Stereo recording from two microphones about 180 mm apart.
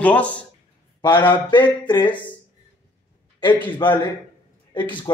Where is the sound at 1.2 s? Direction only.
25° left (ahead or behind).